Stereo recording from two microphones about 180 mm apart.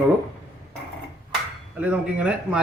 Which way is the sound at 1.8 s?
5° right (ahead or behind).